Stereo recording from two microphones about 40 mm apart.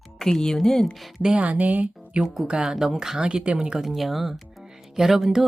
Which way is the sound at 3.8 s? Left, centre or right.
Centre.